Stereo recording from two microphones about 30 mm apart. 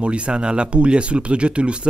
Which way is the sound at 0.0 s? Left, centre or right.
Right.